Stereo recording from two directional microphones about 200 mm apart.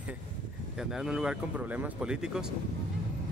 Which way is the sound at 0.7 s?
5° right (ahead or behind).